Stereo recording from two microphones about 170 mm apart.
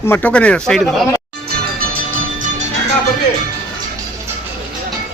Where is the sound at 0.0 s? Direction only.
10° left (ahead or behind).